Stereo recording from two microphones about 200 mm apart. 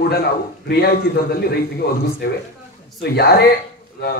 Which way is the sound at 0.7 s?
50° left (ahead or behind).